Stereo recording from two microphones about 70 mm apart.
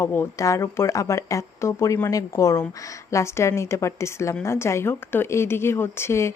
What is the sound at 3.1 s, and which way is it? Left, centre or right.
Speech, left.